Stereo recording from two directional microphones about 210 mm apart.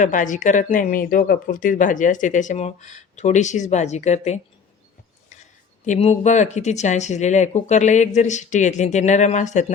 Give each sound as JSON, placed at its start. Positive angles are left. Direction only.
{"t": 0.0, "sound": "speech", "side_deg": 35}
{"t": 5.8, "sound": "speech", "side_deg": 35}